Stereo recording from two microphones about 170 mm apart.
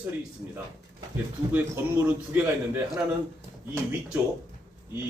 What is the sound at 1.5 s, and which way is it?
A man's voice, 15° right (ahead or behind).